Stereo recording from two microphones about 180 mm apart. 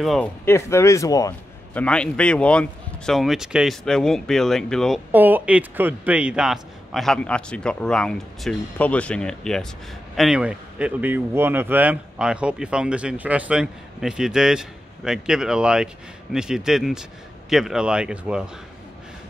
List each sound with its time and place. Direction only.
0.0 s speech: centre (ahead or behind)
0.5 s speech: 15° left (ahead or behind)
1.7 s speech: 5° left (ahead or behind)
5.1 s speech: 10° right (ahead or behind)